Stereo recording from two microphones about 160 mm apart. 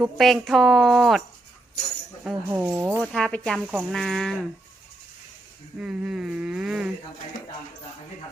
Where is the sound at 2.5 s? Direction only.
10° right (ahead or behind).